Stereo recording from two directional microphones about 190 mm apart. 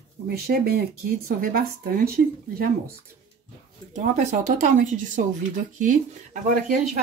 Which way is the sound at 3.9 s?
40° right (ahead or behind).